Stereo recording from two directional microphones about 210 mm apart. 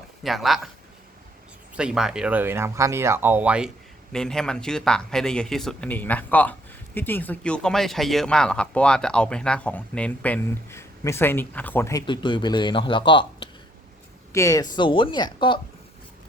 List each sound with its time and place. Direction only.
0.2 s speech: centre (ahead or behind)
1.7 s speech: 5° right (ahead or behind); by 15.6 s 20° left (ahead or behind)